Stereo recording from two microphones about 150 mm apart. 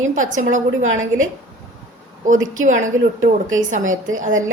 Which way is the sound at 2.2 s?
55° right (ahead or behind).